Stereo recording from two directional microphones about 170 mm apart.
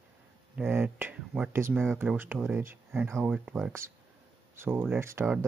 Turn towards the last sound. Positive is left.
turn(degrees=-15)  # may be behind; listen again after turning